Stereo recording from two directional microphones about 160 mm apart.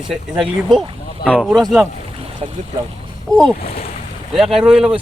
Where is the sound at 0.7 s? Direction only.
Centre (ahead or behind).